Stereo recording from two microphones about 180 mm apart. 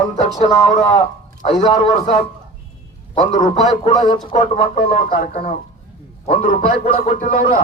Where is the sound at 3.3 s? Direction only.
45° left (ahead or behind).